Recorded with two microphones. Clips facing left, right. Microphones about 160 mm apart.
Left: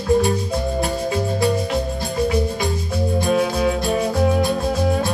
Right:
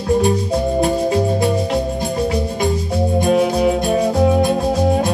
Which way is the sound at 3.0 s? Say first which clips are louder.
Right 4 dB; 20° right (ahead or behind).